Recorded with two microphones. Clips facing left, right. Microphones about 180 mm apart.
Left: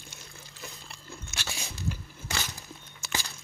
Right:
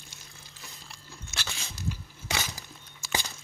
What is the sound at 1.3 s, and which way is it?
Biting, 60° left (ahead or behind).